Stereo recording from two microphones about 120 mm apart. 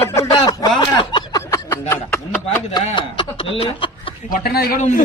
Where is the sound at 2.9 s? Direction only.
45° left (ahead or behind).